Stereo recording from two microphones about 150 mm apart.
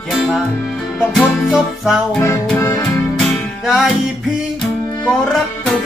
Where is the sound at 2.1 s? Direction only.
20° left (ahead or behind).